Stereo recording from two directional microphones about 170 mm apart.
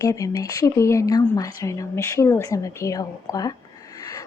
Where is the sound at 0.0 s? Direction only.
20° left (ahead or behind).